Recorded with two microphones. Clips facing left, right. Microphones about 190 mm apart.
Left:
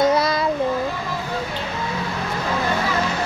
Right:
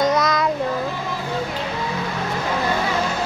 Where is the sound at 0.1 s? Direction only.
30° left (ahead or behind).